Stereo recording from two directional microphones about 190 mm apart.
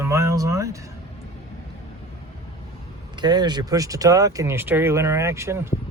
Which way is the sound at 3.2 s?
20° right (ahead or behind).